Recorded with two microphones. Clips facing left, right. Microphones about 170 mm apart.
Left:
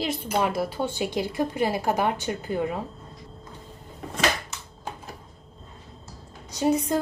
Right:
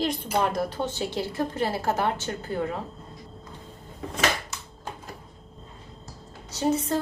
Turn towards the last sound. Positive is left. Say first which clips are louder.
# left 2 dB
turn(degrees=10)  # may be behind; listen again after turning